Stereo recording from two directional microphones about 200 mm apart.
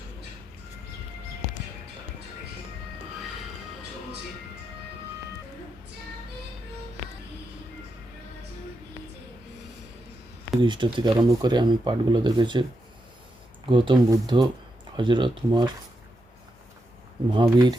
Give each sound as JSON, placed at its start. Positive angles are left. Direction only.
{"t": 10.6, "sound": "speech", "side_deg": -25}
{"t": 13.7, "sound": "speech", "side_deg": -25}
{"t": 17.4, "sound": "speech", "side_deg": -20}